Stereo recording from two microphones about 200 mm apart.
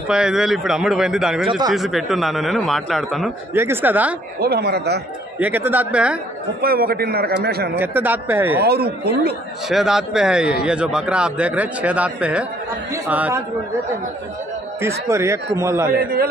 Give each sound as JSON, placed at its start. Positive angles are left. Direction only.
{"t": 0.1, "sound": "a man's voice", "side_deg": -5}
{"t": 1.4, "sound": "speech", "side_deg": -25}
{"t": 1.7, "sound": "a man's voice", "side_deg": 0}
{"t": 3.5, "sound": "a man's voice", "side_deg": -10}
{"t": 4.4, "sound": "speech", "side_deg": -55}
{"t": 5.4, "sound": "a man's voice", "side_deg": -10}
{"t": 6.6, "sound": "a man's voice", "side_deg": -50}
{"t": 7.8, "sound": "a man's voice", "side_deg": -10}
{"t": 8.6, "sound": "a man's voice", "side_deg": -50}
{"t": 9.7, "sound": "a man's voice", "side_deg": 0}
{"t": 14.8, "sound": "a man's voice", "side_deg": -15}
{"t": 16.0, "sound": "a man's voice", "side_deg": -50}